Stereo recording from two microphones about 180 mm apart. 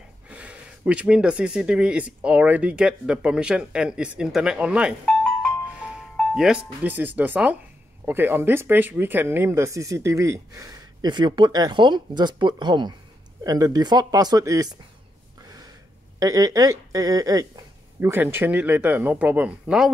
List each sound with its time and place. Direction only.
0.3 s speech: 5° right (ahead or behind)
5.2 s music: centre (ahead or behind)
8.0 s speech: 10° right (ahead or behind)
16.2 s speech: 20° right (ahead or behind)